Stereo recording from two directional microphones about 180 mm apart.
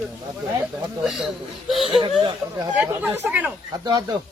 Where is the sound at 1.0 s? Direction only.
Centre (ahead or behind).